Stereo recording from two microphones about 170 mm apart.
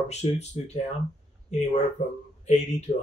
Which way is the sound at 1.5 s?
40° left (ahead or behind).